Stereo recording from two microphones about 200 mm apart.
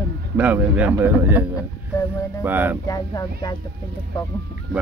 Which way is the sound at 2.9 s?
20° left (ahead or behind).